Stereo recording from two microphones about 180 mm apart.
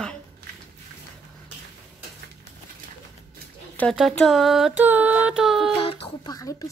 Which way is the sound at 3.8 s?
Centre (ahead or behind).